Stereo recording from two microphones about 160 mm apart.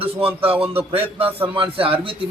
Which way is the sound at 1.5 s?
35° right (ahead or behind).